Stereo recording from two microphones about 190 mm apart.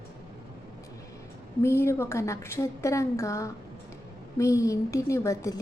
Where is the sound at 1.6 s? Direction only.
15° left (ahead or behind).